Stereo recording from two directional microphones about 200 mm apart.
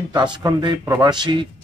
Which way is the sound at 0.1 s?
20° right (ahead or behind).